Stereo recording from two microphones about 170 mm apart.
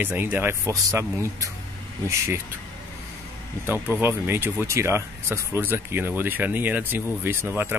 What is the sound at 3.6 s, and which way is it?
Speech, 10° right (ahead or behind).